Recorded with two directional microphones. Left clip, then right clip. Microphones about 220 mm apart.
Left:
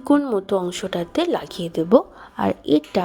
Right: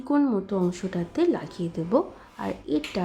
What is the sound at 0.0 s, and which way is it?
A woman's voice, 35° left (ahead or behind).